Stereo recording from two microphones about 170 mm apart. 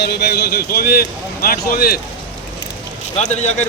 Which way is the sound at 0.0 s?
75° left (ahead or behind).